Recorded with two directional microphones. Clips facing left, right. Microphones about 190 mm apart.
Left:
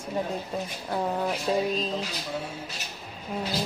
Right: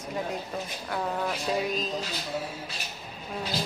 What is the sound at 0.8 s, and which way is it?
Speech, 20° left (ahead or behind).